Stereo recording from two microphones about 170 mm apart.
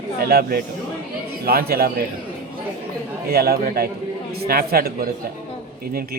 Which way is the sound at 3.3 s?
65° right (ahead or behind).